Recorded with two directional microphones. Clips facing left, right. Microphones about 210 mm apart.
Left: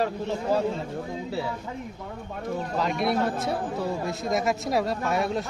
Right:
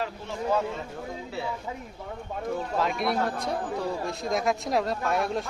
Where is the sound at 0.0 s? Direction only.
35° left (ahead or behind).